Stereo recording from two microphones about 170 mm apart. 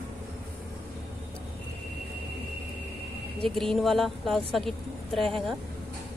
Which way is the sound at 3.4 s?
Centre (ahead or behind).